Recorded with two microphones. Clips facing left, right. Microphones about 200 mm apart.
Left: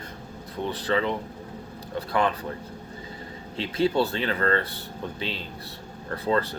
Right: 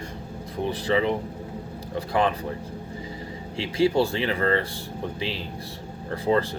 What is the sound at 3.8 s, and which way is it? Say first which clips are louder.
Speech: right 2 dB; 10° right (ahead or behind).